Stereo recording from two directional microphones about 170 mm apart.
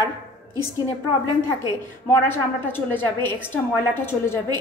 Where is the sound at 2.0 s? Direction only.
10° left (ahead or behind).